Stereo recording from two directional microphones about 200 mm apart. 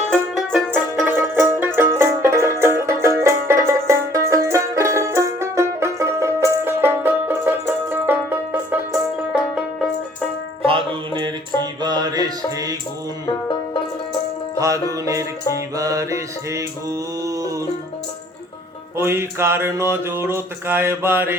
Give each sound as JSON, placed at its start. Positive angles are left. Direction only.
{"t": 0.1, "sound": "music", "side_deg": 5}
{"t": 0.7, "sound": "music", "side_deg": -10}
{"t": 3.7, "sound": "banjo", "side_deg": -15}
{"t": 10.7, "sound": "music", "side_deg": -20}
{"t": 14.6, "sound": "music", "side_deg": -15}
{"t": 18.9, "sound": "mantra", "side_deg": -15}